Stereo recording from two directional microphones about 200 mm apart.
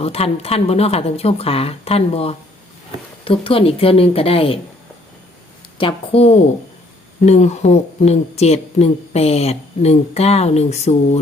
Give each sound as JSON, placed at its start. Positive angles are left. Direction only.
{"t": 0.0, "sound": "a woman's voice", "side_deg": 30}
{"t": 5.7, "sound": "a woman's voice", "side_deg": 25}